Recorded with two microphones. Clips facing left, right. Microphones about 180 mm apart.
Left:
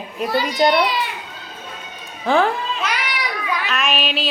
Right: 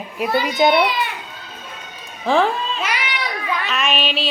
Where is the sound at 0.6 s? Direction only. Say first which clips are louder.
Right 1 dB; 5° right (ahead or behind).